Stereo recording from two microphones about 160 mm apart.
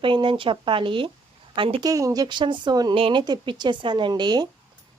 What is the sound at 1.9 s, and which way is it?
Speech, 20° right (ahead or behind).